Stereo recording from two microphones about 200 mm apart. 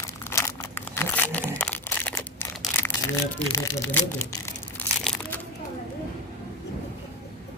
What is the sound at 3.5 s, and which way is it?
Speech, 15° left (ahead or behind).